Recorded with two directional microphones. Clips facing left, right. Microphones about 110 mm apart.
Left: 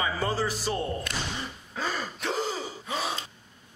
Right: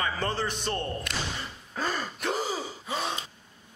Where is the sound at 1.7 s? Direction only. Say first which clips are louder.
Right 1 dB; centre (ahead or behind).